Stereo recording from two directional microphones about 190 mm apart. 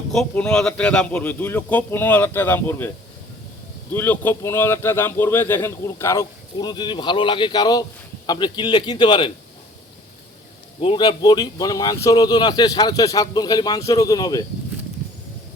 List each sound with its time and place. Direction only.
0.1 s speech: 5° left (ahead or behind)
3.9 s speech: 10° left (ahead or behind)
10.8 s speech: 25° left (ahead or behind)